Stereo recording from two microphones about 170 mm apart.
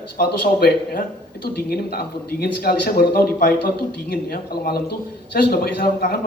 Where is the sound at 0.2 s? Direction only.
60° left (ahead or behind).